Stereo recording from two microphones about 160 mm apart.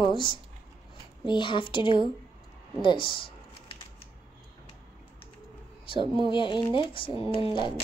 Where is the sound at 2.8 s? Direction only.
30° left (ahead or behind).